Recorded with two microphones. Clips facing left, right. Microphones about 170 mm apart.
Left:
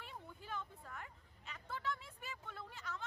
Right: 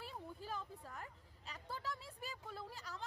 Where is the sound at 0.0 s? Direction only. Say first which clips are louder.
Right 4 dB; 35° right (ahead or behind).